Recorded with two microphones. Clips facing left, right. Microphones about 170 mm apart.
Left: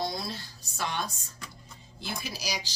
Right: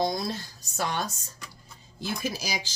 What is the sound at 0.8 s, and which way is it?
Speech, 45° right (ahead or behind).